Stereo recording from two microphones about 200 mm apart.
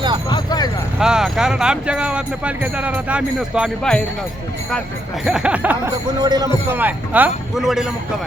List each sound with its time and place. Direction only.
0.3 s a sound: 20° left (ahead or behind)
0.9 s speech: 5° right (ahead or behind)
5.2 s speech: 5° right (ahead or behind)
6.1 s speech: 20° right (ahead or behind)
6.7 s a man's voice: 10° right (ahead or behind)